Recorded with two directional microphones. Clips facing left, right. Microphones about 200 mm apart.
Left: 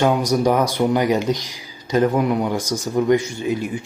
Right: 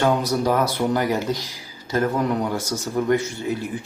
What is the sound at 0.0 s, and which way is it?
Speech, 15° left (ahead or behind).